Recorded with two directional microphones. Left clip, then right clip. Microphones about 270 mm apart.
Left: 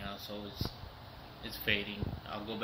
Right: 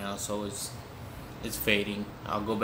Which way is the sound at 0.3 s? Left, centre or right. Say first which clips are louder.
Right 7 dB; right.